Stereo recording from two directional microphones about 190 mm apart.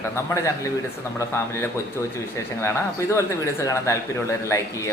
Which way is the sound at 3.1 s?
15° left (ahead or behind).